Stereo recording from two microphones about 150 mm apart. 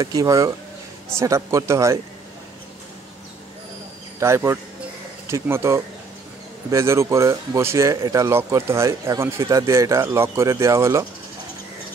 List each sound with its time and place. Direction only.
0.0 s speech: 25° right (ahead or behind)
4.2 s speech: 20° right (ahead or behind)